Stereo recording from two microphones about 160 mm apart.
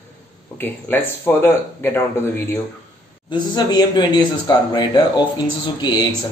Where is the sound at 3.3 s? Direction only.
25° left (ahead or behind).